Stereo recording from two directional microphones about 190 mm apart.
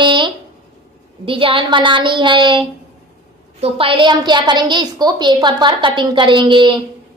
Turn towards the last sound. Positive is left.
turn(degrees=-25)  # may be behind; listen again after turning